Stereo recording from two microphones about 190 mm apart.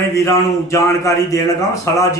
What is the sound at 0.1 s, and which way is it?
Speech, 15° left (ahead or behind).